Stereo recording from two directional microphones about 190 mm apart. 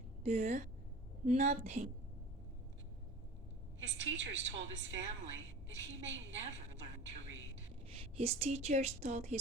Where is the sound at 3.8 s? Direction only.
75° right (ahead or behind).